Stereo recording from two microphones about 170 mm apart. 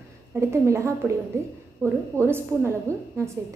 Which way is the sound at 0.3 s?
15° right (ahead or behind).